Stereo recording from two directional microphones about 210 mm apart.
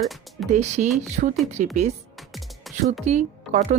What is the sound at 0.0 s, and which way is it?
Speech, centre (ahead or behind).